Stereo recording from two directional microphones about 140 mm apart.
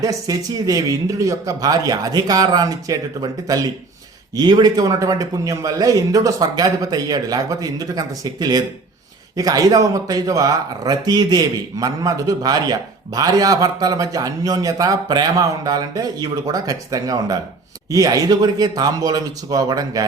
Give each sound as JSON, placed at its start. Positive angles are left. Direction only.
{"t": 0.0, "sound": "speech", "side_deg": -25}